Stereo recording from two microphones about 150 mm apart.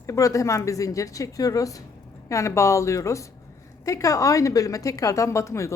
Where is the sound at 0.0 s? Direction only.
20° left (ahead or behind).